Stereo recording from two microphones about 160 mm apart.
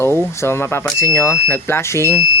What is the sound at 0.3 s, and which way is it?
Speech, 15° left (ahead or behind).